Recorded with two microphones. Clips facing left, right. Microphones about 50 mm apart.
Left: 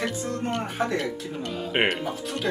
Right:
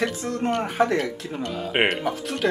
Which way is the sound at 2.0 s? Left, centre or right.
Right.